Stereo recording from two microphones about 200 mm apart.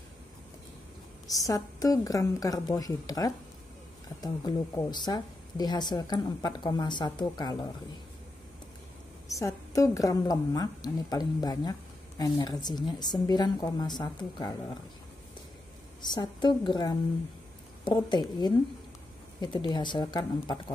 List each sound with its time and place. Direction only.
1.2 s a woman's voice: 15° left (ahead or behind)
9.3 s speech: 15° left (ahead or behind)
16.0 s speech: 20° left (ahead or behind)